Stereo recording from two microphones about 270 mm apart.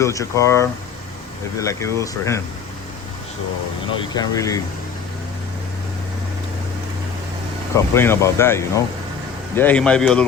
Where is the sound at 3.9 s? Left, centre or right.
Centre.